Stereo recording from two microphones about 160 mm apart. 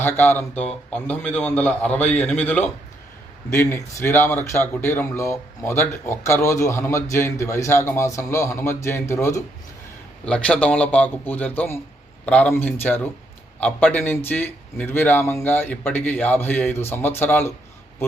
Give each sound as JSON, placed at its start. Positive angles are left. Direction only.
{"t": 0.0, "sound": "speech", "side_deg": 15}
{"t": 10.2, "sound": "speech", "side_deg": 5}